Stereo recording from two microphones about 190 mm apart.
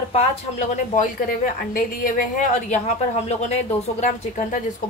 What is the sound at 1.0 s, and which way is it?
A woman's voice, 45° left (ahead or behind).